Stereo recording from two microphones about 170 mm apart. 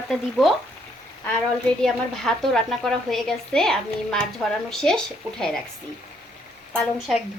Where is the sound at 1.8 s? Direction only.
5° left (ahead or behind).